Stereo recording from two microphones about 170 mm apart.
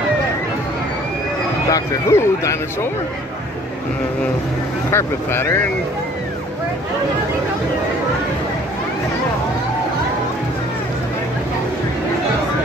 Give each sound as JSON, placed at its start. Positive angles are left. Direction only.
{"t": 1.7, "sound": "speech", "side_deg": 15}
{"t": 4.9, "sound": "speech", "side_deg": 15}